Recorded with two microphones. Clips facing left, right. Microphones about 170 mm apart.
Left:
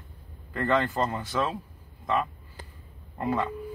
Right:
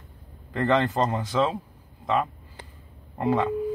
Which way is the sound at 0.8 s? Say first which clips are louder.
Right 4 dB; 20° right (ahead or behind).